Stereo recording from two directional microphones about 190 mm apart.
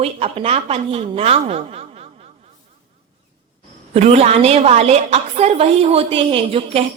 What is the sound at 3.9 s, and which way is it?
A woman's voice, 35° right (ahead or behind).